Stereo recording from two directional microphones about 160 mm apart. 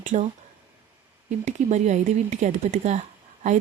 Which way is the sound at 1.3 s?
45° right (ahead or behind).